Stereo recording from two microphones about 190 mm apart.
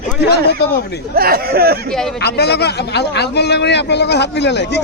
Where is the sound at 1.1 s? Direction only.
50° right (ahead or behind).